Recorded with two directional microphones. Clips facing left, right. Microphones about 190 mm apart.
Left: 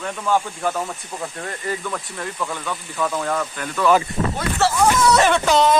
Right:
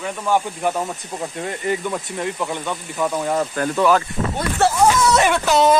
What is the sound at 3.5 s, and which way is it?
Speech, 40° right (ahead or behind).